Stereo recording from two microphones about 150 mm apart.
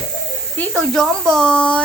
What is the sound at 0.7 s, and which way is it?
Speech, 5° left (ahead or behind).